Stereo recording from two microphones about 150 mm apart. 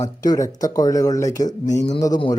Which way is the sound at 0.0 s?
25° left (ahead or behind).